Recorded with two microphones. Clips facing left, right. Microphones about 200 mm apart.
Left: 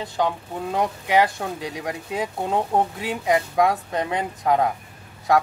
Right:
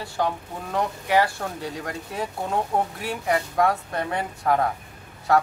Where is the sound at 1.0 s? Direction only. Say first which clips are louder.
Left 1 dB; 20° left (ahead or behind).